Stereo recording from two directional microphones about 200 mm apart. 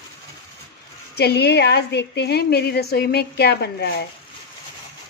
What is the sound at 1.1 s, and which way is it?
A woman's voice, 55° left (ahead or behind).